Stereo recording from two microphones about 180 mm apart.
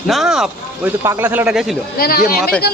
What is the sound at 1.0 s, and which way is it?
Speech, 15° right (ahead or behind).